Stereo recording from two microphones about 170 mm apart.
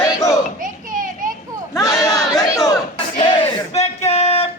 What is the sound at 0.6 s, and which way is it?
Children playing, 50° right (ahead or behind).